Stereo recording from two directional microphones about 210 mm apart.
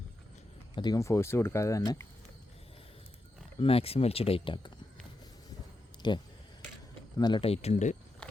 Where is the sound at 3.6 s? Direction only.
25° left (ahead or behind).